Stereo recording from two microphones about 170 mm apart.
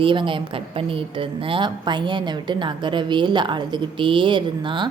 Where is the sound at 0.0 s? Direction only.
30° right (ahead or behind).